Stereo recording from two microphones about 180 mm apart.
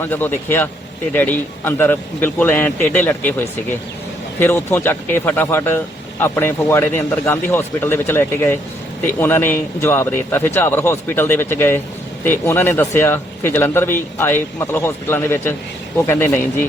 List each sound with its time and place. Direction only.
0.0 s speech: 10° left (ahead or behind)